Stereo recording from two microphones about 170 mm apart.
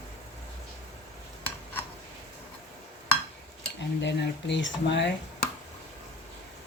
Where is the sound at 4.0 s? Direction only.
90° left.